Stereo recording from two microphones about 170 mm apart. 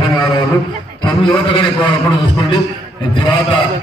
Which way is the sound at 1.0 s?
30° left (ahead or behind).